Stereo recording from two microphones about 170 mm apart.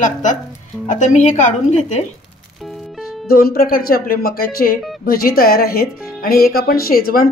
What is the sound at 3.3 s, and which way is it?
Speech, 60° left (ahead or behind).